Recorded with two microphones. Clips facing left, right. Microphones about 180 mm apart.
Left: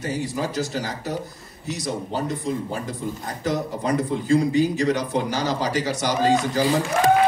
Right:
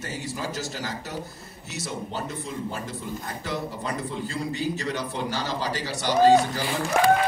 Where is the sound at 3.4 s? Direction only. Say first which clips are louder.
Left 8 dB; 45° left (ahead or behind).